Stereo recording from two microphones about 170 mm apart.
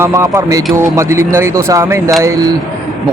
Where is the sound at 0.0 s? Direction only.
15° right (ahead or behind).